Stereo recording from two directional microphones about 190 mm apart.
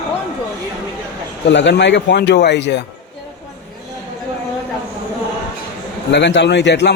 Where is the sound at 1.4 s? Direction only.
70° left (ahead or behind).